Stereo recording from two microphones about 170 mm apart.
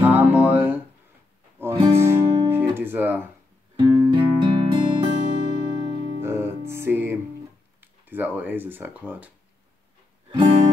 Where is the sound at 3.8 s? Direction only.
30° right (ahead or behind).